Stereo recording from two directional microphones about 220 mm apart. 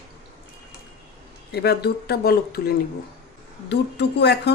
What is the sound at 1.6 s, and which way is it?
Speech, 45° left (ahead or behind).